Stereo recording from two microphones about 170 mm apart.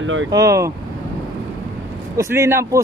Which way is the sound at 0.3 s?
20° right (ahead or behind).